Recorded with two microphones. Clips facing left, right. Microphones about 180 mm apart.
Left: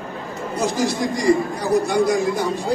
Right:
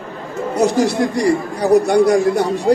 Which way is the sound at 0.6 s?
70° right (ahead or behind).